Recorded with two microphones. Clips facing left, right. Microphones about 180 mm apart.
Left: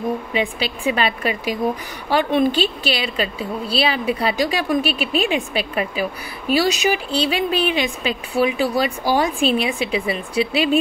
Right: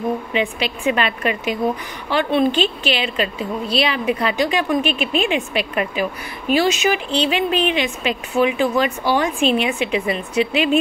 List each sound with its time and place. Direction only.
0.3 s speech: 35° left (ahead or behind)